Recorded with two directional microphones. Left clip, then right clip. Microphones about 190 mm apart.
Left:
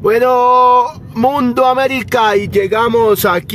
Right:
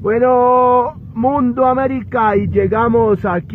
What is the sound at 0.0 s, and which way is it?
Speech, 25° left (ahead or behind).